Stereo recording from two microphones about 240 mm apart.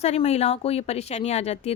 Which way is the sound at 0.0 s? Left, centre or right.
Left.